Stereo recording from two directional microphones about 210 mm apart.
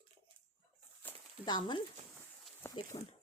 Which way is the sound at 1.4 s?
20° left (ahead or behind).